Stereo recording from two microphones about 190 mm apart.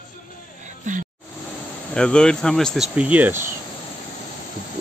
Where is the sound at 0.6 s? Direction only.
40° right (ahead or behind).